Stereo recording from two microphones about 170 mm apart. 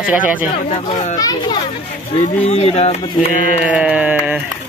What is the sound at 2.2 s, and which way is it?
Speech, 40° left (ahead or behind).